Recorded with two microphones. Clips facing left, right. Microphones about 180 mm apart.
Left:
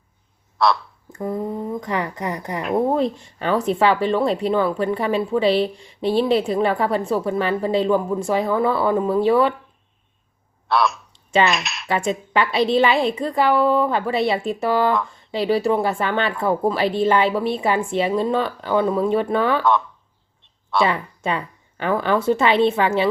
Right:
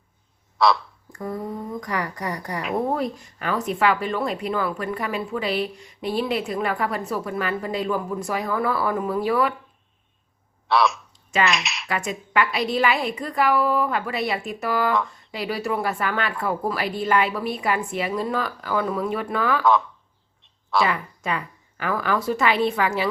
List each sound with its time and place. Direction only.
0.6 s speech: centre (ahead or behind)
1.1 s speech: 20° left (ahead or behind)
10.7 s speech: centre (ahead or behind)
11.1 s a sound: 30° left (ahead or behind)
11.4 s speech: centre (ahead or behind)
11.9 s speech: 30° left (ahead or behind)
20.7 s speech: 30° left (ahead or behind)